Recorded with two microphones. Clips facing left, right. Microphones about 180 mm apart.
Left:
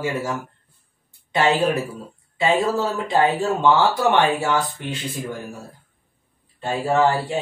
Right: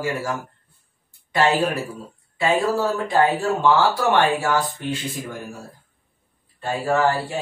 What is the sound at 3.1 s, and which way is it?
Speech, 20° left (ahead or behind).